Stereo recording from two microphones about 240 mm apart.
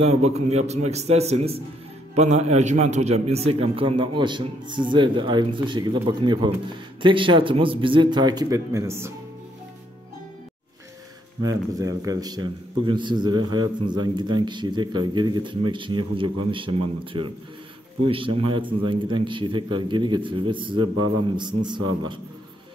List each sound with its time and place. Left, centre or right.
0.0 s a man's voice: right; by 9.1 s centre
11.4 s a man's voice: centre